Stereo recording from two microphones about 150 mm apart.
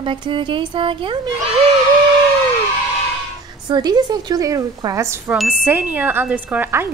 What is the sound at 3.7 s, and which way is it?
A woman's voice, 25° right (ahead or behind).